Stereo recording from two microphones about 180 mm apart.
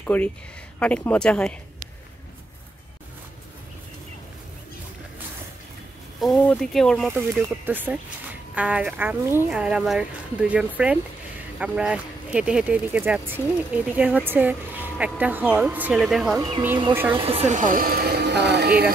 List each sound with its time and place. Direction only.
0.0 s a woman's voice: 10° left (ahead or behind)
6.2 s speech: 5° left (ahead or behind)
7.1 s speech: 10° right (ahead or behind)
16.3 s speech: 25° right (ahead or behind)
16.9 s speech: 10° right (ahead or behind)
17.2 s speech: 35° right (ahead or behind); by 18.9 s 60° right (ahead or behind)